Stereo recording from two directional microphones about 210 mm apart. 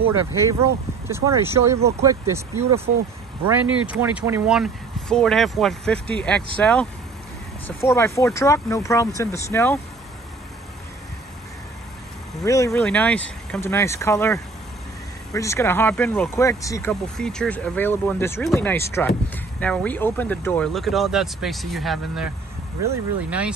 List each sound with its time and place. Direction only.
0.4 s speech: 15° right (ahead or behind)
3.4 s speech: 10° right (ahead or behind); by 9.8 s 10° left (ahead or behind)
12.4 s speech: 15° left (ahead or behind)
17.2 s speech: 5° left (ahead or behind)